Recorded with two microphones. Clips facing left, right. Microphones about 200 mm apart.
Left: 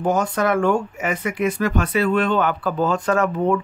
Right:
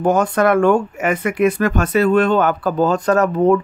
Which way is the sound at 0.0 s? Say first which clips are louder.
Right 5 dB; 55° right (ahead or behind).